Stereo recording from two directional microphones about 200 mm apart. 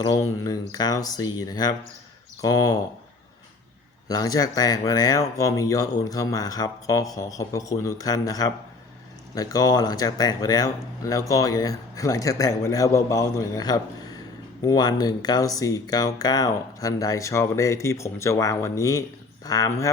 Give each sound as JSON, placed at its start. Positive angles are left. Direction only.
{"t": 0.0, "sound": "speech", "side_deg": 15}
{"t": 4.1, "sound": "speech", "side_deg": 20}